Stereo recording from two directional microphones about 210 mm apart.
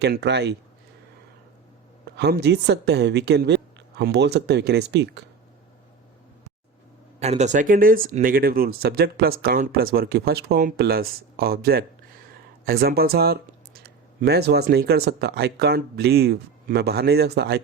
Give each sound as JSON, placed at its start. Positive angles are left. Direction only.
{"t": 0.0, "sound": "speech", "side_deg": -50}
{"t": 2.1, "sound": "speech", "side_deg": -55}
{"t": 7.2, "sound": "speech", "side_deg": -30}